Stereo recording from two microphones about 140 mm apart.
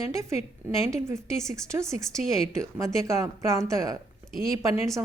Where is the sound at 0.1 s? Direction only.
20° right (ahead or behind).